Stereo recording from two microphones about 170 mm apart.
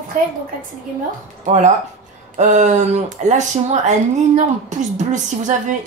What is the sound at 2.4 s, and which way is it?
Speech, 45° right (ahead or behind).